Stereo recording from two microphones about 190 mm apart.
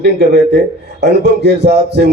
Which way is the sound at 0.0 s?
60° right (ahead or behind).